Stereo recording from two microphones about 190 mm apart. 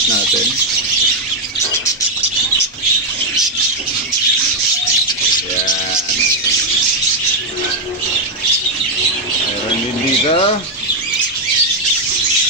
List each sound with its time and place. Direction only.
10.2 s bird: 30° left (ahead or behind)